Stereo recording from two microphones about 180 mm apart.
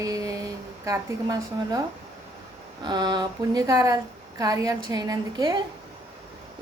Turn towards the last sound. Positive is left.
turn(degrees=-20)  # may be behind; listen again after turning